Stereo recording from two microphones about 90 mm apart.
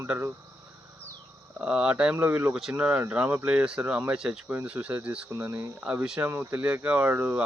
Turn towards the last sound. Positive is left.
turn(degrees=-25)  # may be behind; listen again after turning